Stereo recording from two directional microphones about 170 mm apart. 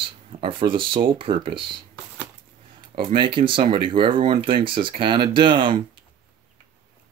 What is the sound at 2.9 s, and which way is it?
Speech, 30° right (ahead or behind).